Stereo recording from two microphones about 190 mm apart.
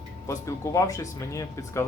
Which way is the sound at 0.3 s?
15° left (ahead or behind).